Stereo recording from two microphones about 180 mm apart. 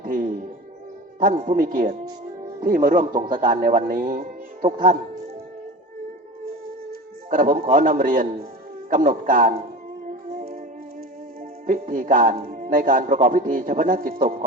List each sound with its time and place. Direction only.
0.0 s music: 50° right (ahead or behind)
1.2 s speech: 45° right (ahead or behind)
7.3 s speech: 50° right (ahead or behind)
10.3 s music: 45° right (ahead or behind)
11.6 s speech: 50° right (ahead or behind)